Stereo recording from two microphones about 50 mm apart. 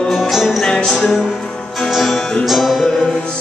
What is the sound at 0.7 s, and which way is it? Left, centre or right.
Music, centre.